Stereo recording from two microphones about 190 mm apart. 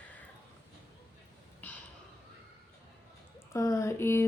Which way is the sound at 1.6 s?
10° left (ahead or behind).